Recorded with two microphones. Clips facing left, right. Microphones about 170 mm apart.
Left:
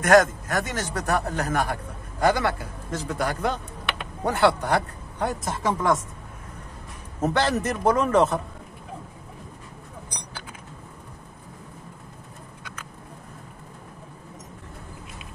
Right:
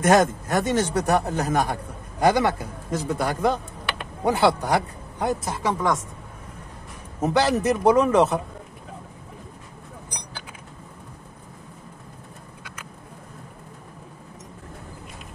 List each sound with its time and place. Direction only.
0.0 s a man's voice: 25° right (ahead or behind)
5.4 s speech: centre (ahead or behind)
7.2 s a man's voice: 10° right (ahead or behind)